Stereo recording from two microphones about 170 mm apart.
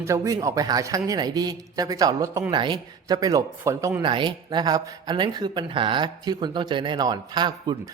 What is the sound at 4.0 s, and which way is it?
A man's voice, 30° right (ahead or behind).